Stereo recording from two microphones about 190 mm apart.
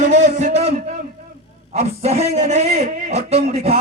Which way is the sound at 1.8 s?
35° right (ahead or behind).